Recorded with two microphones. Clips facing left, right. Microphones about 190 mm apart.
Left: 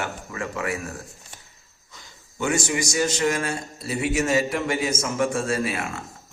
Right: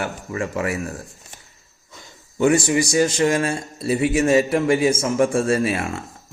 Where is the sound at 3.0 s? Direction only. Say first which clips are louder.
Right 5 dB; 35° right (ahead or behind).